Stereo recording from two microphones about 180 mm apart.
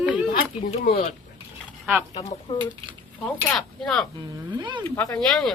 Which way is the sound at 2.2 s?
25° left (ahead or behind).